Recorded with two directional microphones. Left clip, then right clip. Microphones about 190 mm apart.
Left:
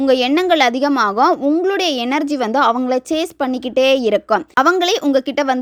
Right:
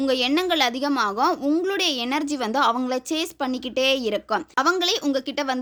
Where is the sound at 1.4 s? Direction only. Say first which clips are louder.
Left 6 dB; 20° left (ahead or behind).